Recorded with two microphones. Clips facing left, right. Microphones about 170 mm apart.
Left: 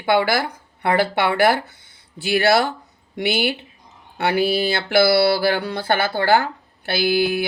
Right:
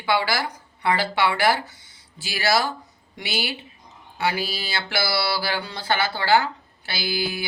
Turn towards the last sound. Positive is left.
turn(degrees=60)  # may be behind; listen again after turning